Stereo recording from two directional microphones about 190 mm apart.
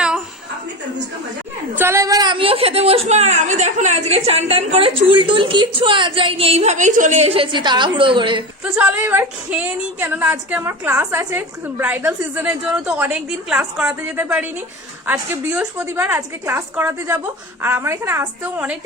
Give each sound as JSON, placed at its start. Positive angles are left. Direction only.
{"t": 1.8, "sound": "a woman's voice", "side_deg": -15}
{"t": 8.7, "sound": "a woman's voice", "side_deg": -10}